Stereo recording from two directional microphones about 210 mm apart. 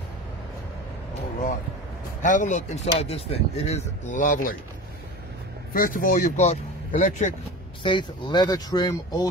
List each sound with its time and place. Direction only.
2.2 s speech: 35° left (ahead or behind)
5.7 s speech: 40° left (ahead or behind)
7.8 s speech: 20° left (ahead or behind)